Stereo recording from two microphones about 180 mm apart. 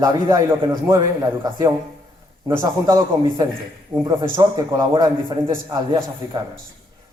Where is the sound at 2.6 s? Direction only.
20° right (ahead or behind).